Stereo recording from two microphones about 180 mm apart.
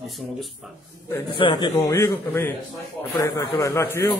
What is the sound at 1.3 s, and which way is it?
A man's voice, 25° left (ahead or behind).